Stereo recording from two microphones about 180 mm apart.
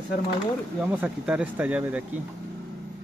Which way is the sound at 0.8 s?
5° right (ahead or behind).